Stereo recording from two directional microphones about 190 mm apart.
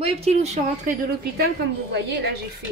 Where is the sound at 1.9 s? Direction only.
60° right (ahead or behind).